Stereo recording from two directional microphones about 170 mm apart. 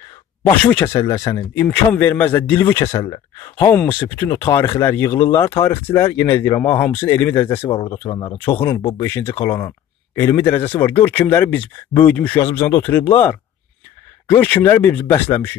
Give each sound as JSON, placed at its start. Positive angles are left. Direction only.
{"t": 0.5, "sound": "speech", "side_deg": 10}
{"t": 7.6, "sound": "speech", "side_deg": 30}
{"t": 9.0, "sound": "speech", "side_deg": 15}